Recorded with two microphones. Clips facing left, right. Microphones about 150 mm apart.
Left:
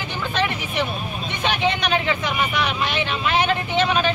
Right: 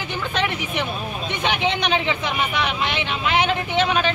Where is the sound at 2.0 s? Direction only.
20° right (ahead or behind).